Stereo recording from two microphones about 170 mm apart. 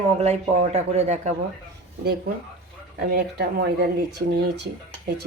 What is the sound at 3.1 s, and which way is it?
Speech, 75° right (ahead or behind).